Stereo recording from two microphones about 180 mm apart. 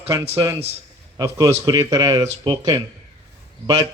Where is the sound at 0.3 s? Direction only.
20° right (ahead or behind).